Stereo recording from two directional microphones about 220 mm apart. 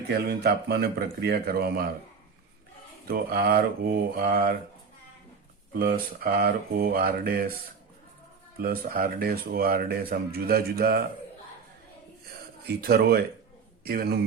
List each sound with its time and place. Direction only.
0.1 s speech: 45° right (ahead or behind)
3.1 s speech: 40° right (ahead or behind)
5.8 s speech: 40° right (ahead or behind)
8.5 s speech: 45° right (ahead or behind)
12.6 s speech: 45° right (ahead or behind)